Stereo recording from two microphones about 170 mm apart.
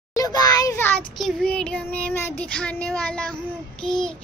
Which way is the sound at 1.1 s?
5° left (ahead or behind).